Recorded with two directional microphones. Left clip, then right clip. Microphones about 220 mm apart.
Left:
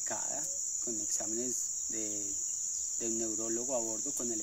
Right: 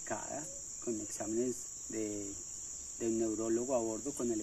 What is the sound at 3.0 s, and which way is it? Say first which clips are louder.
Cricket: right 4 dB; 25° left (ahead or behind).